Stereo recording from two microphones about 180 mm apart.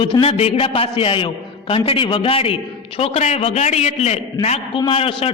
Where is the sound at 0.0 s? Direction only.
30° left (ahead or behind).